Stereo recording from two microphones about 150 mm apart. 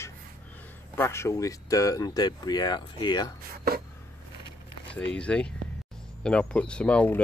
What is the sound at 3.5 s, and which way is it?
Speech, 90° right.